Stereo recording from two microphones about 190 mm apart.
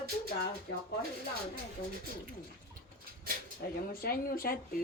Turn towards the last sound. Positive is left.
turn(degrees=50)  # may be behind; listen again after turning